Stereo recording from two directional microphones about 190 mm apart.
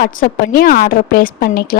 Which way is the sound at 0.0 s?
50° left (ahead or behind).